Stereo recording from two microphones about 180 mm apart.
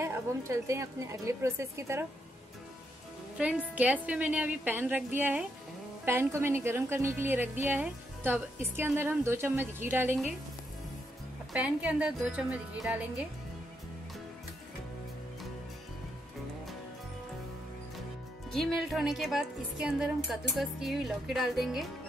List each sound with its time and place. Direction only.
0.0 s a woman's voice: 15° right (ahead or behind)
3.7 s a woman's voice: 10° right (ahead or behind)
11.5 s a woman's voice: 5° right (ahead or behind)
18.5 s a woman's voice: centre (ahead or behind)